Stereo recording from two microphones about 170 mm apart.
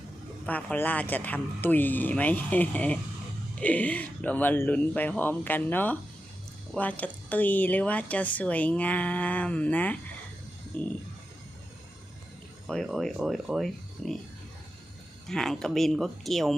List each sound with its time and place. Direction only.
0.4 s speech: 10° left (ahead or behind)
12.6 s speech: centre (ahead or behind)
15.3 s speech: 5° left (ahead or behind)